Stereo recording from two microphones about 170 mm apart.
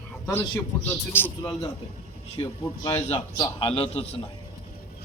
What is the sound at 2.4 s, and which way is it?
A man's voice, 25° left (ahead or behind).